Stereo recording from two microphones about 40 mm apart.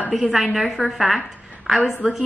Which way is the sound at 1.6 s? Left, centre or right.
Centre.